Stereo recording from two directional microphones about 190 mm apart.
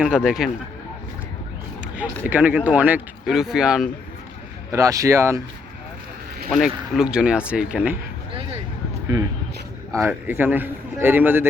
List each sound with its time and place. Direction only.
0.0 s speech: 5° right (ahead or behind)
2.3 s speech: 10° right (ahead or behind)
4.7 s speech: 15° right (ahead or behind)
6.5 s speech: centre (ahead or behind)
9.1 s speech: 20° right (ahead or behind)